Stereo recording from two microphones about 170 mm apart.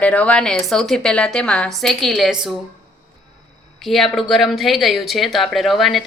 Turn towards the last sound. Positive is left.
turn(degrees=0)  # may be behind; listen again after turning